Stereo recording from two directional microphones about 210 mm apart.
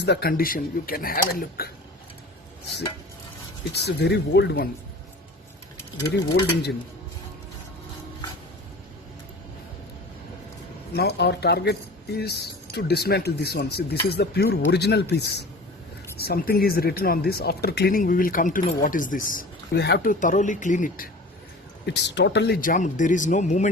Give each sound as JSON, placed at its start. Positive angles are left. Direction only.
{"t": 0.0, "sound": "speech", "side_deg": 50}
{"t": 3.7, "sound": "speech", "side_deg": 55}
{"t": 6.2, "sound": "speech", "side_deg": 50}
{"t": 10.9, "sound": "speech", "side_deg": 50}
{"t": 21.8, "sound": "speech", "side_deg": 55}